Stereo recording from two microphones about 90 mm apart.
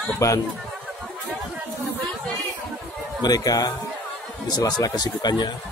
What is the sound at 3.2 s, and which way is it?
Speech, 45° left (ahead or behind).